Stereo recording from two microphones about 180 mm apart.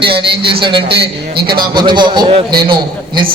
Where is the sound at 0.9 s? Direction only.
65° right (ahead or behind).